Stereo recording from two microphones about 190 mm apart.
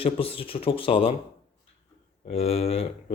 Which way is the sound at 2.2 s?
30° left (ahead or behind).